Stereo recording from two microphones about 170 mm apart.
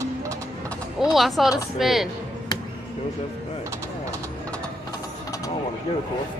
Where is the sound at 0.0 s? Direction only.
20° right (ahead or behind).